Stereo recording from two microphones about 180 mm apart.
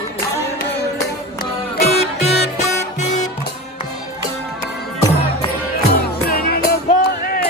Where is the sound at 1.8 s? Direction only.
35° left (ahead or behind).